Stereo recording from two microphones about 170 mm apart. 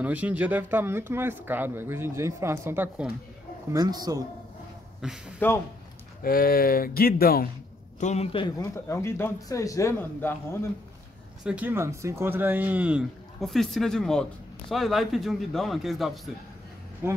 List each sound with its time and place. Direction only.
0.0 s speech: 10° right (ahead or behind)
3.7 s speech: 20° right (ahead or behind)
5.0 s speech: 5° right (ahead or behind)
5.4 s a man's voice: 10° left (ahead or behind)
6.2 s speech: 60° left (ahead or behind)
8.0 s a man's voice: 40° left (ahead or behind); by 10.7 s 15° left (ahead or behind)
11.4 s speech: 10° right (ahead or behind)
17.0 s speech: 15° right (ahead or behind)